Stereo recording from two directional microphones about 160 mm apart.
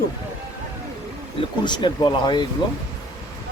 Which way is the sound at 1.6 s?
30° left (ahead or behind).